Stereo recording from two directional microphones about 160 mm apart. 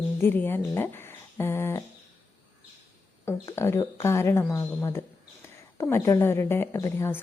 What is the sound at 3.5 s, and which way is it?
A woman's voice, 15° left (ahead or behind).